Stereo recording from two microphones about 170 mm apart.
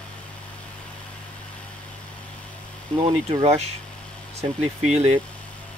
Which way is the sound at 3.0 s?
35° right (ahead or behind).